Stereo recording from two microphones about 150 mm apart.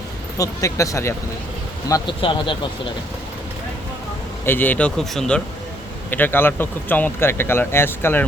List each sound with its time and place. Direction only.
0.3 s speech: 20° left (ahead or behind)
1.9 s speech: 35° left (ahead or behind)
4.4 s speech: 15° left (ahead or behind)